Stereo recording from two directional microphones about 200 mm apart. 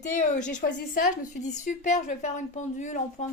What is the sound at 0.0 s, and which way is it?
A woman's voice, 40° left (ahead or behind).